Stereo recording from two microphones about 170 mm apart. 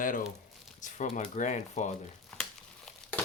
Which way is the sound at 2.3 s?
5° left (ahead or behind).